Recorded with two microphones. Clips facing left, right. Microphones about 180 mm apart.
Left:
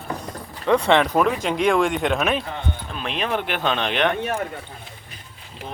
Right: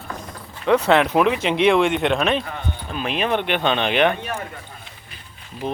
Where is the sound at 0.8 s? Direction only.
5° right (ahead or behind).